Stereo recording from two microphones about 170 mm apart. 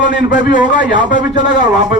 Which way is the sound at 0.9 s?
50° left (ahead or behind).